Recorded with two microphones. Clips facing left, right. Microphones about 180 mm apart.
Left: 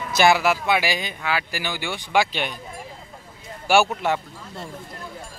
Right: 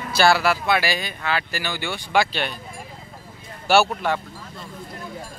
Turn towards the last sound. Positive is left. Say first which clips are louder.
# even
turn(degrees=20)  # may be behind; listen again after turning